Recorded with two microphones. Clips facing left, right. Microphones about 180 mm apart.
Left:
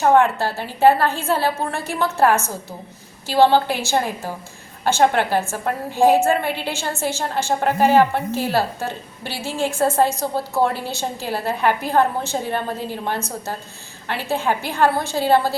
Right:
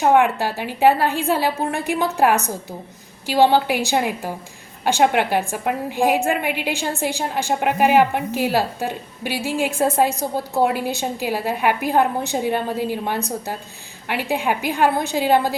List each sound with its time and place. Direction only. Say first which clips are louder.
0.0 s a woman's voice: even; 15° right (ahead or behind)